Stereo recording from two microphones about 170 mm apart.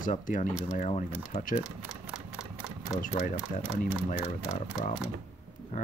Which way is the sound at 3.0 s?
50° left (ahead or behind).